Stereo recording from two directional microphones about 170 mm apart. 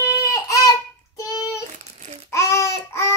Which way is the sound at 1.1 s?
20° left (ahead or behind).